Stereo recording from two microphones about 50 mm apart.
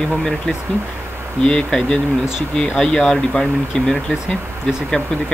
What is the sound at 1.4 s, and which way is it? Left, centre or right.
Speech, centre.